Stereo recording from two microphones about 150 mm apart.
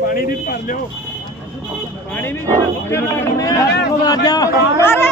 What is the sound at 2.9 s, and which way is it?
Speech, 20° left (ahead or behind).